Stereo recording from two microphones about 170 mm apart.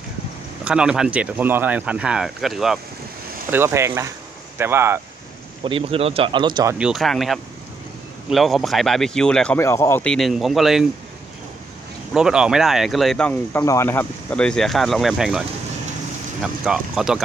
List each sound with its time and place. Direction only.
0.7 s speech: 5° right (ahead or behind)
3.4 s speech: 15° right (ahead or behind)
5.6 s speech: 30° right (ahead or behind)
6.8 s speech: centre (ahead or behind)
9.6 s speech: 15° left (ahead or behind)
10.0 s speech: centre (ahead or behind)
12.1 s speech: 5° right (ahead or behind)